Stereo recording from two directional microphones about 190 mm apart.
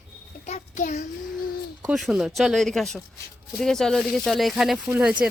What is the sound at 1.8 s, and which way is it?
Speech, centre (ahead or behind).